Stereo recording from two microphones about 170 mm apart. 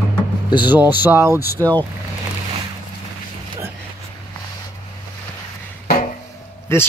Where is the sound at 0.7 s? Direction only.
10° right (ahead or behind).